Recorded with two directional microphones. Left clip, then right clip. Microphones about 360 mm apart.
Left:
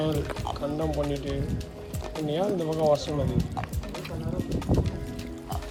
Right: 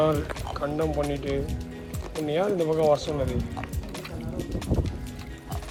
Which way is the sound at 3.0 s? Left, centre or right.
Centre.